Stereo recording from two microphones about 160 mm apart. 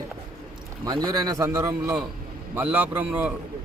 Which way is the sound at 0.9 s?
25° right (ahead or behind).